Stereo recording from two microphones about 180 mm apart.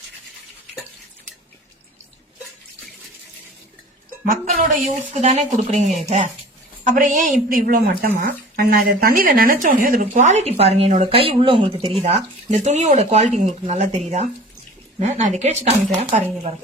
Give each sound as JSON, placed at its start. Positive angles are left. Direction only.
{"t": 4.3, "sound": "a woman's voice", "side_deg": -45}
{"t": 14.9, "sound": "speech", "side_deg": -40}